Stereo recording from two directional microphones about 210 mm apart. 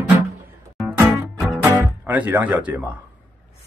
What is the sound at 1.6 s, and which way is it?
Music, 10° right (ahead or behind).